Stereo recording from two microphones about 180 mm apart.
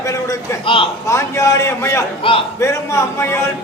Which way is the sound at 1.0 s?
15° left (ahead or behind).